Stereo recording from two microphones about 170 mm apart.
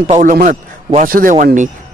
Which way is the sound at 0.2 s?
50° right (ahead or behind).